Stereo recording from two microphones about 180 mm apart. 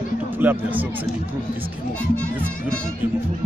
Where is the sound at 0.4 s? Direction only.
10° right (ahead or behind).